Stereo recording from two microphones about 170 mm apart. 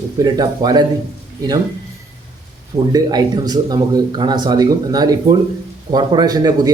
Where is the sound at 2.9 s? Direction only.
25° right (ahead or behind).